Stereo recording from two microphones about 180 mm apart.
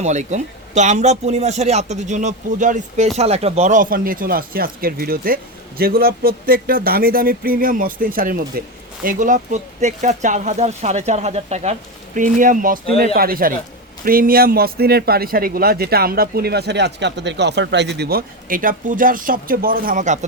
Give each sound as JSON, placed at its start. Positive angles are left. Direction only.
{"t": 0.0, "sound": "a man's voice", "side_deg": -40}